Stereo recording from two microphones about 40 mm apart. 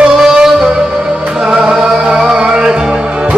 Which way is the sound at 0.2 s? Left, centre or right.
Centre.